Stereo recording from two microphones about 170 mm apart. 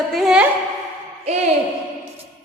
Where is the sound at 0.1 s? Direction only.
5° right (ahead or behind).